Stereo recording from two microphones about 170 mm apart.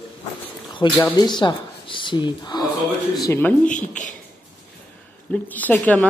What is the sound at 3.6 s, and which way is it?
Speech, 50° left (ahead or behind).